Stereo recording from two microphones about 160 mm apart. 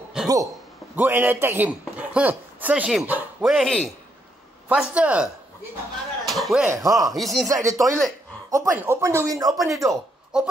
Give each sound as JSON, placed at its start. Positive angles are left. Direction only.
{"t": 0.2, "sound": "a sound", "side_deg": -5}
{"t": 0.9, "sound": "a man's voice", "side_deg": -10}
{"t": 6.2, "sound": "a sound", "side_deg": 0}
{"t": 6.6, "sound": "speech", "side_deg": -20}
{"t": 7.1, "sound": "speech", "side_deg": 0}
{"t": 7.4, "sound": "speech", "side_deg": -20}
{"t": 10.3, "sound": "speech", "side_deg": -5}